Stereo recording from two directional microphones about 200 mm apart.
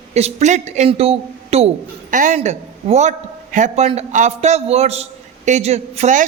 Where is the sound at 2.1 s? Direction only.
40° right (ahead or behind).